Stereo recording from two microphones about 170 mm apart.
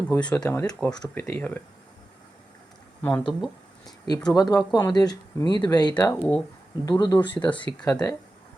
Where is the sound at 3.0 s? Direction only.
10° left (ahead or behind).